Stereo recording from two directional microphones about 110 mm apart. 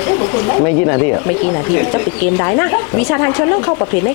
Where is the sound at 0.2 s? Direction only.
30° left (ahead or behind).